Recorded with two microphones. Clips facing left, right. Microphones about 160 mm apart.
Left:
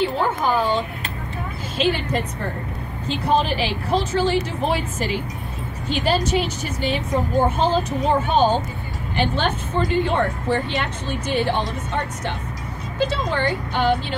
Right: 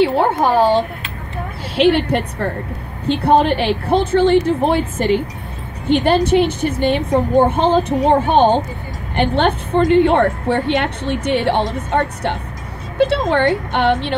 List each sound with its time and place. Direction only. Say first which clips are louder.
0.0 s a woman's voice: right 7 dB; 70° right (ahead or behind)
1.8 s a woman's voice: right 8 dB; 70° right (ahead or behind)